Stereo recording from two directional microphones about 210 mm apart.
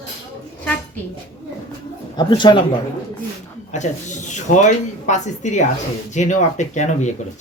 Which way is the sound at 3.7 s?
35° left (ahead or behind).